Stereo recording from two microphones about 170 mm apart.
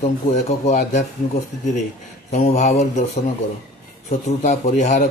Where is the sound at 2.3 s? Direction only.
45° left (ahead or behind).